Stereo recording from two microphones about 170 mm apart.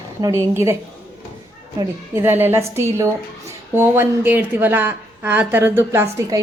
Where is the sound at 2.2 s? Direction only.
15° right (ahead or behind).